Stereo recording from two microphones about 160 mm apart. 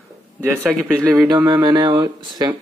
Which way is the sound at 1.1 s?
20° right (ahead or behind).